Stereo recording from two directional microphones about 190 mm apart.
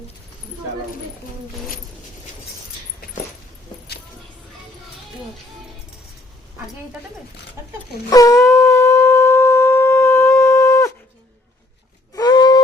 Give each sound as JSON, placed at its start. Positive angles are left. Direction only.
{"t": 7.6, "sound": "speech", "side_deg": -15}
{"t": 8.1, "sound": "shofar", "side_deg": 20}
{"t": 12.1, "sound": "a sound", "side_deg": 20}